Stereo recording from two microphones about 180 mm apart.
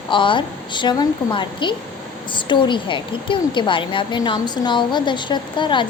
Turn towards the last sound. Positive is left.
turn(degrees=25)  # may be behind; listen again after turning